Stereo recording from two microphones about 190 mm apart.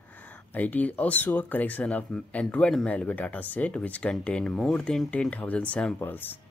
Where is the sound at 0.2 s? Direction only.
10° left (ahead or behind).